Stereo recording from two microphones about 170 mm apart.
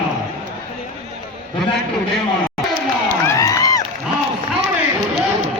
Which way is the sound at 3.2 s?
20° left (ahead or behind).